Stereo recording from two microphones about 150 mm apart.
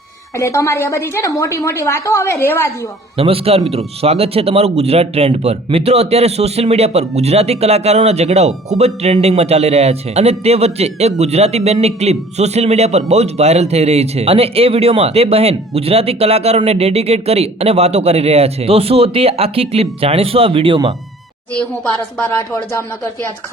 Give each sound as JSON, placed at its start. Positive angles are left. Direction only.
{"t": 0.3, "sound": "a woman's voice", "side_deg": 20}
{"t": 3.2, "sound": "speech", "side_deg": -40}